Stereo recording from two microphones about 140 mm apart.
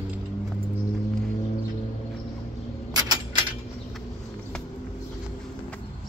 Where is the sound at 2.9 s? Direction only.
30° right (ahead or behind).